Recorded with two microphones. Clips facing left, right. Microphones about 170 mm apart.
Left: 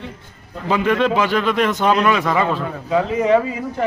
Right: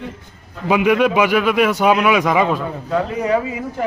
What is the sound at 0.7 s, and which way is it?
A man's voice, 10° right (ahead or behind).